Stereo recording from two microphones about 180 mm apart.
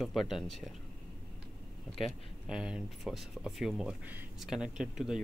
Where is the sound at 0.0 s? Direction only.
Centre (ahead or behind).